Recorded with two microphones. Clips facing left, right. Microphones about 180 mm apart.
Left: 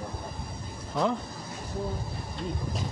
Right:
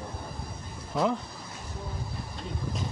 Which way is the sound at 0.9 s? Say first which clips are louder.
Even; centre (ahead or behind).